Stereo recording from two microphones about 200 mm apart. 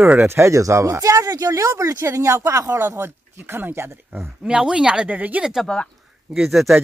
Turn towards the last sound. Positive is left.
turn(degrees=0)  # may be behind; listen again after turning